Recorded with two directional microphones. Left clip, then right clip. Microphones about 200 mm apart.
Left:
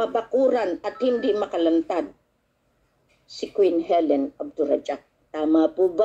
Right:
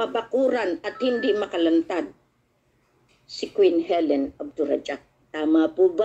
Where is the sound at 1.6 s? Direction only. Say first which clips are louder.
Left 1 dB; 25° left (ahead or behind).